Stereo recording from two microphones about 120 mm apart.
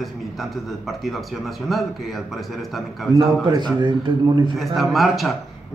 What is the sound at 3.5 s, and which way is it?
A man's voice, 40° right (ahead or behind).